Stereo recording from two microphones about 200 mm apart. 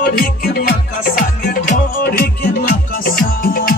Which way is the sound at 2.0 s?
50° left (ahead or behind).